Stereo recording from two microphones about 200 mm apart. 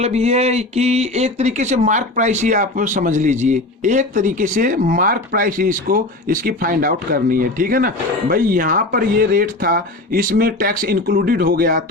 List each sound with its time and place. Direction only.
0.0 s speech: 30° right (ahead or behind); by 11.8 s 45° right (ahead or behind)